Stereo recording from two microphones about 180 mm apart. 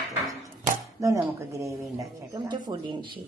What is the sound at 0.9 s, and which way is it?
Speech, 15° right (ahead or behind).